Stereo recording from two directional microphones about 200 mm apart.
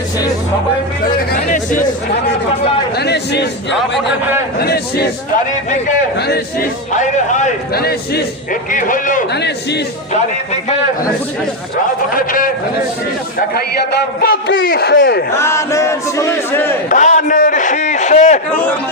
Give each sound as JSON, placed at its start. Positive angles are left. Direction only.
{"t": 1.0, "sound": "a man's voice", "side_deg": 45}
{"t": 3.0, "sound": "a man's voice", "side_deg": 55}
{"t": 6.1, "sound": "a man's voice", "side_deg": 55}
{"t": 6.9, "sound": "a man's voice", "side_deg": 40}
{"t": 9.3, "sound": "a man's voice", "side_deg": 55}
{"t": 10.1, "sound": "a man's voice", "side_deg": 35}
{"t": 12.1, "sound": "a man's voice", "side_deg": 45}
{"t": 14.2, "sound": "a man's voice", "side_deg": 50}
{"t": 15.4, "sound": "speech", "side_deg": 15}
{"t": 16.9, "sound": "a man's voice", "side_deg": 35}